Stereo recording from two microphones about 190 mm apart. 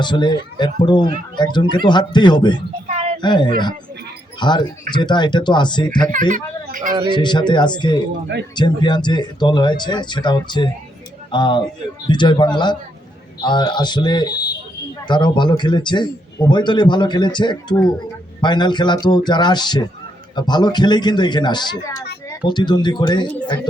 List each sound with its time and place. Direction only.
0.0 s speech: 25° left (ahead or behind)
6.3 s a child's voice: 45° right (ahead or behind)
7.1 s speech: 25° left (ahead or behind)